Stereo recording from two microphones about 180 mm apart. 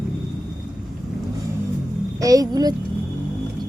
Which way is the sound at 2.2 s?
20° right (ahead or behind).